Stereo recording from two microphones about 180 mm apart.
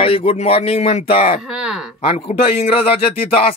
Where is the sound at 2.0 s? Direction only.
30° left (ahead or behind).